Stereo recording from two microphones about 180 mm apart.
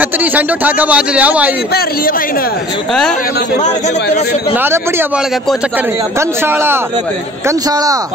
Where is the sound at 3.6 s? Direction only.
40° left (ahead or behind).